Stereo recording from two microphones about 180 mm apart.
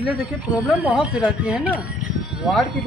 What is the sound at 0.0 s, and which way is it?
Speech, 5° right (ahead or behind).